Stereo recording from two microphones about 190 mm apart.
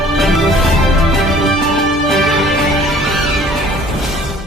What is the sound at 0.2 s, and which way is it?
Music, centre (ahead or behind).